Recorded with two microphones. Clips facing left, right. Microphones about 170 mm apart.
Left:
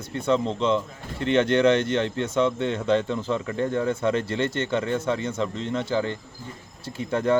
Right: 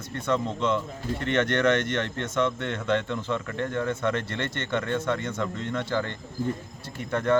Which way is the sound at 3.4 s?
15° left (ahead or behind).